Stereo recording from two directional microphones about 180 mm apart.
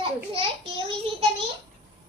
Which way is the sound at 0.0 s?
30° right (ahead or behind).